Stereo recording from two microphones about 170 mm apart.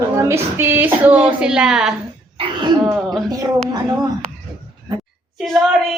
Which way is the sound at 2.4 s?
30° right (ahead or behind).